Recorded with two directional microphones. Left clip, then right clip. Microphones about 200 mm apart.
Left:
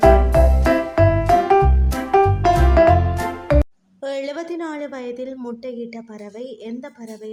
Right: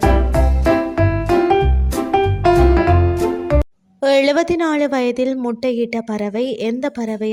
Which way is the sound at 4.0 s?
45° right (ahead or behind).